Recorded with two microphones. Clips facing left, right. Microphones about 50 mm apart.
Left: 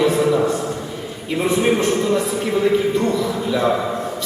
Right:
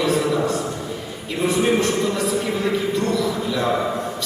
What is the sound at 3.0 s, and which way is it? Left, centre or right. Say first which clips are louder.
Speech: left 2 dB; centre.